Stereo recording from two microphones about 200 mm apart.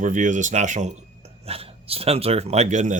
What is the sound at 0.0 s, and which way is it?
Speech, 40° right (ahead or behind).